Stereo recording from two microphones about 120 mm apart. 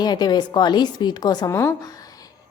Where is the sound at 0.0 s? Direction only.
35° left (ahead or behind).